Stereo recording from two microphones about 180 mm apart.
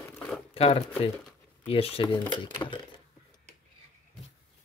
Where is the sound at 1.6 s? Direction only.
30° left (ahead or behind).